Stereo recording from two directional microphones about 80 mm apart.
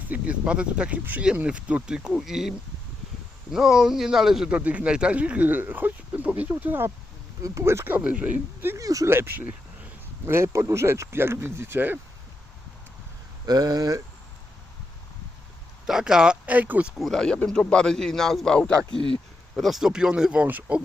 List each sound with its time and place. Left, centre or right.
0.1 s speech: centre
4.5 s speech: centre
7.4 s speech: right
7.9 s speech: centre
8.8 s speech: right
9.0 s speech: right
13.4 s speech: right
15.9 s speech: centre
17.0 s speech: centre